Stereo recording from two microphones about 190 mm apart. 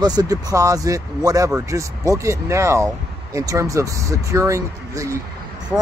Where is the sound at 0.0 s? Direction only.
20° right (ahead or behind).